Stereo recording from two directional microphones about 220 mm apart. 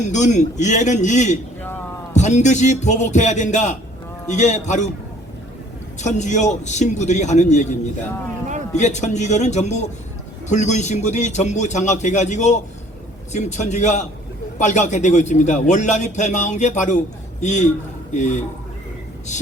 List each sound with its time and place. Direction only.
0.0 s a man's voice: 30° left (ahead or behind)
6.0 s a man's voice: 30° left (ahead or behind)